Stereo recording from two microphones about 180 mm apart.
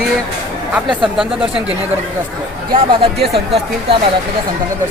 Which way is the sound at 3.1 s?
65° right (ahead or behind).